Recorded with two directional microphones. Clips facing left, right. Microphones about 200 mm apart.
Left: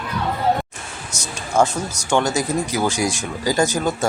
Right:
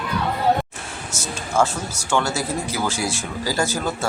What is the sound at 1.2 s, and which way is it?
Speech, 15° left (ahead or behind).